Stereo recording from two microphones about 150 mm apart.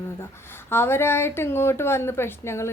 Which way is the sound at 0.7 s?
15° left (ahead or behind).